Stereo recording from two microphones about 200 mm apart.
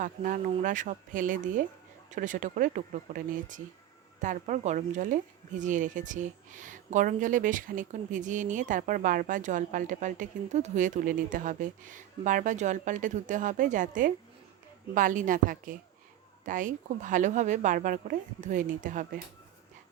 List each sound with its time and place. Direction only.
0.0 s speech: 40° right (ahead or behind)